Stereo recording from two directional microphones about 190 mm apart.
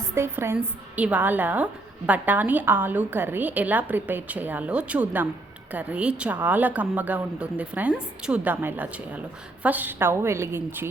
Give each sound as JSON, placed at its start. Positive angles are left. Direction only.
{"t": 0.1, "sound": "a woman's voice", "side_deg": -15}